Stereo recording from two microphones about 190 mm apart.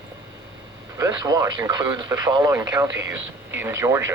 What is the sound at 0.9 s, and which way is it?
Speech, 15° right (ahead or behind).